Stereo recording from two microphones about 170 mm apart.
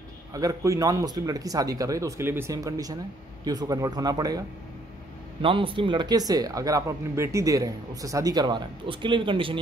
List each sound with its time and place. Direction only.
0.3 s speech: 20° right (ahead or behind)